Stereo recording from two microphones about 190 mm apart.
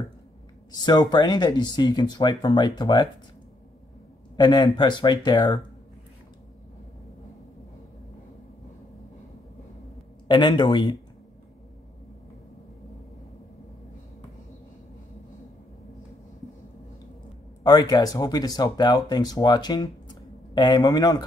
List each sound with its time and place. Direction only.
0.7 s speech: 20° left (ahead or behind)
4.4 s speech: 25° left (ahead or behind)
10.2 s speech: 25° left (ahead or behind)
17.6 s speech: 20° left (ahead or behind)